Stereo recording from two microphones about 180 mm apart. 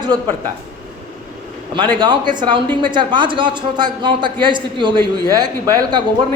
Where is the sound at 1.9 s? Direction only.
25° right (ahead or behind).